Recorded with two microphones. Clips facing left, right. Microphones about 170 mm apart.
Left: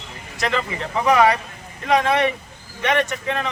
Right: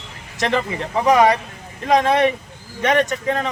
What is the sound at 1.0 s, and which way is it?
Speech, 25° right (ahead or behind).